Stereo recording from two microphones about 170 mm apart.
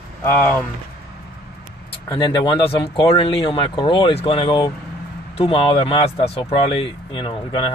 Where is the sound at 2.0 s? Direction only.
25° left (ahead or behind).